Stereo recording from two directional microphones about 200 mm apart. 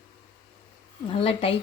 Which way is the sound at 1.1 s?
30° left (ahead or behind).